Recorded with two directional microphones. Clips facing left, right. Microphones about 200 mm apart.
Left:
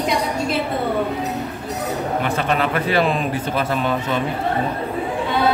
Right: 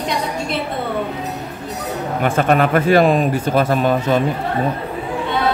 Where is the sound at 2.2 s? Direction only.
50° right (ahead or behind).